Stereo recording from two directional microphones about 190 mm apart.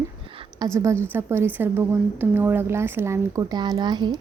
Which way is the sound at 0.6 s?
20° right (ahead or behind).